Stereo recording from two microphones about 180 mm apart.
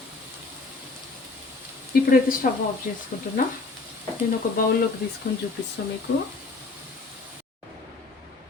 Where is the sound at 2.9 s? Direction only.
50° left (ahead or behind).